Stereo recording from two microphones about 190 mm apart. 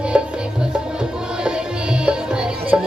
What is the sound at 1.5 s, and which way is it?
Music, 5° right (ahead or behind).